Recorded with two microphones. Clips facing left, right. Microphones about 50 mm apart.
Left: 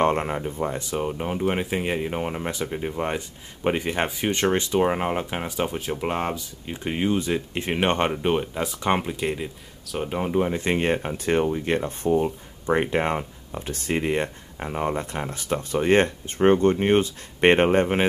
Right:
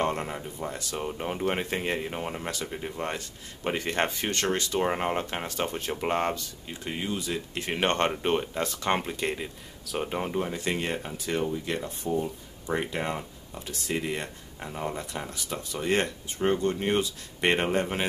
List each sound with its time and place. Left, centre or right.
0.0 s speech: left
0.9 s speech: centre
4.4 s speech: left
4.8 s speech: centre
6.7 s speech: left; by 10.3 s centre
10.3 s speech: left